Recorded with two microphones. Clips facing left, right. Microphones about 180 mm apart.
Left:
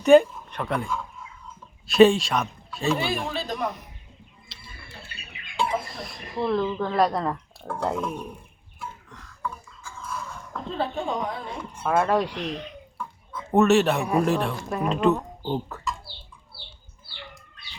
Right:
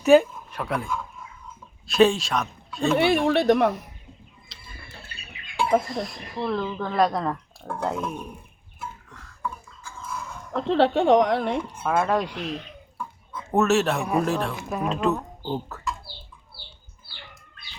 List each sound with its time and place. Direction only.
0.0 s speech: 5° right (ahead or behind)
3.0 s speech: 70° right (ahead or behind)
4.5 s bird: centre (ahead or behind)
5.8 s speech: centre (ahead or behind)
9.4 s a sound: centre (ahead or behind)
10.5 s a woman's voice: 80° right
11.8 s speech: centre (ahead or behind)